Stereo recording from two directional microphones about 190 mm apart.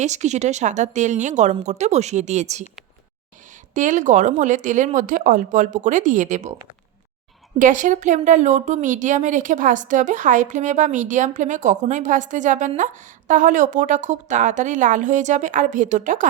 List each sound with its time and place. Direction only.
0.0 s a woman's voice: 35° right (ahead or behind)
3.8 s a woman's voice: 40° right (ahead or behind)
7.6 s a woman's voice: 40° right (ahead or behind)